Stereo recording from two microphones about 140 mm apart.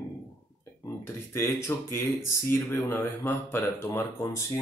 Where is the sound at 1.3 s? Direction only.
20° left (ahead or behind).